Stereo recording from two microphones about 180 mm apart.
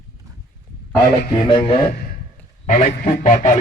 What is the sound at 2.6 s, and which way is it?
Speech, 45° left (ahead or behind).